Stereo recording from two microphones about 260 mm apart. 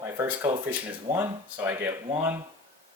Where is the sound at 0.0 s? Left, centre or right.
Centre.